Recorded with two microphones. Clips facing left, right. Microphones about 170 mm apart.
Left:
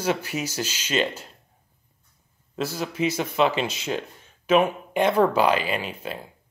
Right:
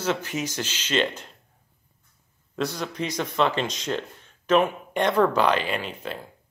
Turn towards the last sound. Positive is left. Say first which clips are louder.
# left 1 dB
turn(degrees=5)  # may be behind; listen again after turning